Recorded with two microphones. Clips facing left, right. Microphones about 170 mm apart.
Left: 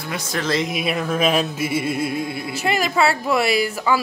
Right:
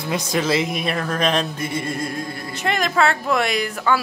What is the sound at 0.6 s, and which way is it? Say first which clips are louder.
Music: even; centre (ahead or behind).